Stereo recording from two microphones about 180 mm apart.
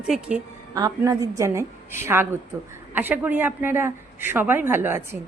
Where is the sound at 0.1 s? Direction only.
5° right (ahead or behind).